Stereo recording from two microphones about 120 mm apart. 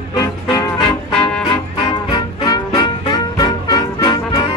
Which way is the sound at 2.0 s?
35° left (ahead or behind).